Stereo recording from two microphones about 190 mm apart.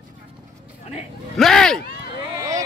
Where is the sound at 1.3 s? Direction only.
Centre (ahead or behind).